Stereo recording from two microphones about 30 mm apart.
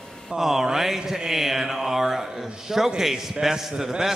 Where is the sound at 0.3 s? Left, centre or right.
Centre.